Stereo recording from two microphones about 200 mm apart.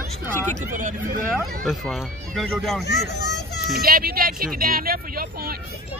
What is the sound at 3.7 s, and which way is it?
Speech, 50° right (ahead or behind).